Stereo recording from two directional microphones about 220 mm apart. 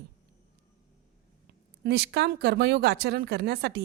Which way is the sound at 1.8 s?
50° right (ahead or behind).